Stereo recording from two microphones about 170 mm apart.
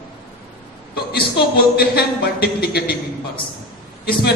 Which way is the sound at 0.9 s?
65° left (ahead or behind).